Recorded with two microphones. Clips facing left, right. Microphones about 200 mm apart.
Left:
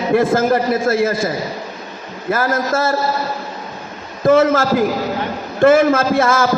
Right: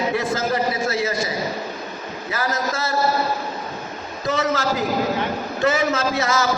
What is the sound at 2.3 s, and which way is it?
Speech, 50° left (ahead or behind).